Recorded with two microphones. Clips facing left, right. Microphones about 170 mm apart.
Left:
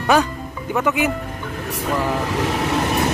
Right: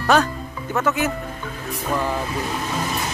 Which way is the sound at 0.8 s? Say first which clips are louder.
Left 2 dB; 15° left (ahead or behind).